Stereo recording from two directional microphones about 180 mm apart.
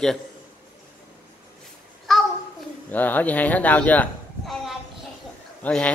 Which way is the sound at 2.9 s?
10° left (ahead or behind).